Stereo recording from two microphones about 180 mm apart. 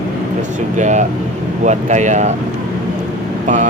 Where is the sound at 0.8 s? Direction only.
40° right (ahead or behind).